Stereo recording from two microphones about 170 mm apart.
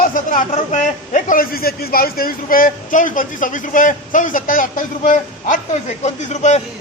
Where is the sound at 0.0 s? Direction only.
50° left (ahead or behind).